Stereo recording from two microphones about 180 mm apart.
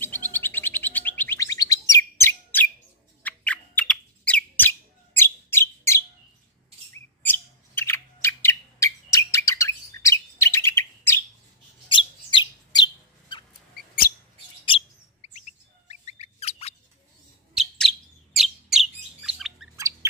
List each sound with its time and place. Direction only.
0.0 s bird: 10° left (ahead or behind)
11.9 s bird: 25° left (ahead or behind)
13.7 s mouse: 55° left (ahead or behind)
15.2 s bird: 40° left (ahead or behind)
17.6 s chirp: centre (ahead or behind)